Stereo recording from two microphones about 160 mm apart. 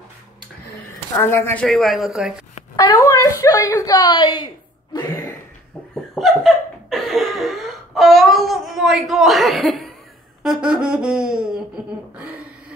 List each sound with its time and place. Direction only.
1.1 s a woman's voice: 15° left (ahead or behind); by 2.4 s 5° right (ahead or behind)
2.7 s a woman's voice: 20° left (ahead or behind)
4.9 s a sound: 25° left (ahead or behind)
6.1 s laughter: centre (ahead or behind)